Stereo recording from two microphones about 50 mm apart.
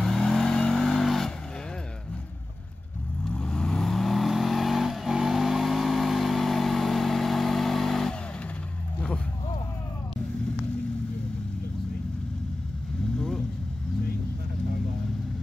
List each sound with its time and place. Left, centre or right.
0.0 s vehicle: centre
3.3 s vehicle: centre
3.8 s vehicle: centre